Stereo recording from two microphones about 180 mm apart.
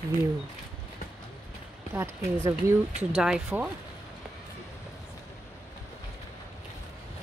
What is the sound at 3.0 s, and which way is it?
Speech, 5° right (ahead or behind).